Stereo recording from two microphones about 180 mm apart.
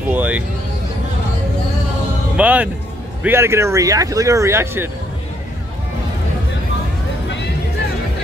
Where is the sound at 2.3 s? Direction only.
10° right (ahead or behind).